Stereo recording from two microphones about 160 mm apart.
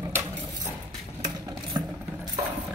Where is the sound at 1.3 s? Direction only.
30° right (ahead or behind).